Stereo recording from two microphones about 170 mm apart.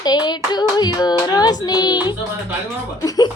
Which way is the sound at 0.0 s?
25° left (ahead or behind).